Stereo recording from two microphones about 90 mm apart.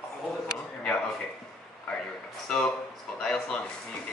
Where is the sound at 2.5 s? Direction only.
10° left (ahead or behind).